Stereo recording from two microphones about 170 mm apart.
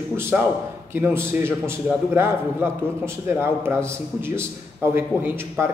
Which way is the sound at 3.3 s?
15° right (ahead or behind).